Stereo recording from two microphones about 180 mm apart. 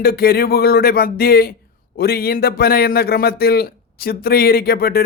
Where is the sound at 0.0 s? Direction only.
60° left (ahead or behind).